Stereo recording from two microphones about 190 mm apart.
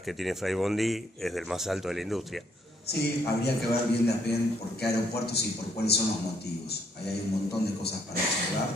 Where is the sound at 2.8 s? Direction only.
60° left (ahead or behind).